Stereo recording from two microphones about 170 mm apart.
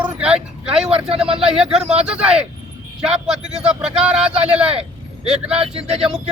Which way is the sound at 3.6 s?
5° right (ahead or behind).